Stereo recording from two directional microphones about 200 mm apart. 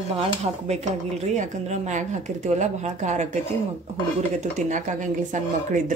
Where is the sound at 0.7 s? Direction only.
35° right (ahead or behind).